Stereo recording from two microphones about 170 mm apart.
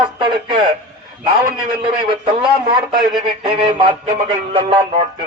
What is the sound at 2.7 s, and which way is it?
Speech, 25° right (ahead or behind).